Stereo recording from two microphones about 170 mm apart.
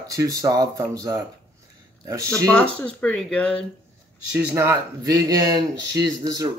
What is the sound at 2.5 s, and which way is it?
Speech, 10° left (ahead or behind).